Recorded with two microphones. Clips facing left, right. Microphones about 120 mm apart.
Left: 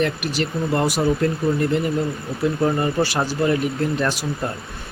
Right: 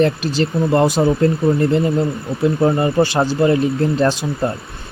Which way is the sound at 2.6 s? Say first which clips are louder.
Right 6 dB; 25° right (ahead or behind).